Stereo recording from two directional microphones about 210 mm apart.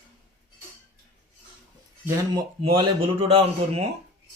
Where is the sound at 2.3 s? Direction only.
25° right (ahead or behind).